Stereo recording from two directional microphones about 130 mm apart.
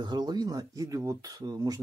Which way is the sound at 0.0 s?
35° right (ahead or behind).